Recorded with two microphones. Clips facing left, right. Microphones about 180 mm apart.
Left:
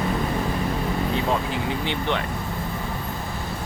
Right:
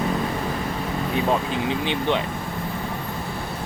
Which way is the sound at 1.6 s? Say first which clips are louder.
Right 2 dB; 15° right (ahead or behind).